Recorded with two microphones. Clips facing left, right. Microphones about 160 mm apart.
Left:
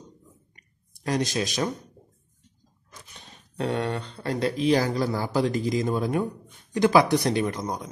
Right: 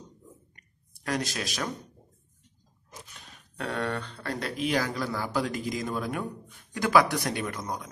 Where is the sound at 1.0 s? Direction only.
20° left (ahead or behind).